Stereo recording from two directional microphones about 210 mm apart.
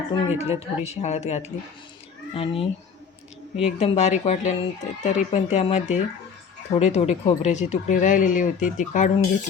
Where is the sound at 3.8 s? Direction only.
30° left (ahead or behind).